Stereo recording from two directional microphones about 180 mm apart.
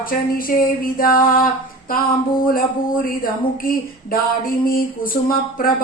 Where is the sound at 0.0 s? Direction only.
50° left (ahead or behind).